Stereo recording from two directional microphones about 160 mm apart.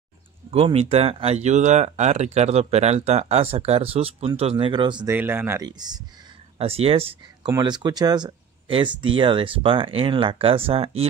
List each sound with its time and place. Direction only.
0.5 s speech: 40° right (ahead or behind)
5.0 s speech: 15° right (ahead or behind)
5.7 s speech: 25° right (ahead or behind)
6.6 s speech: 40° right (ahead or behind)